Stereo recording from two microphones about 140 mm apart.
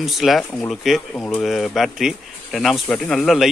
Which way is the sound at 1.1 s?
10° left (ahead or behind).